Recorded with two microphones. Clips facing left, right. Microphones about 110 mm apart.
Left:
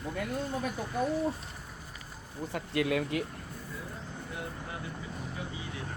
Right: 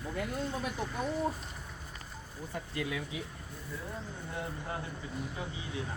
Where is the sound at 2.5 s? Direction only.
70° left (ahead or behind).